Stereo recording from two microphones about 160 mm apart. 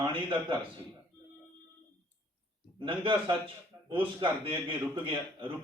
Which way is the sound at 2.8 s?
30° right (ahead or behind).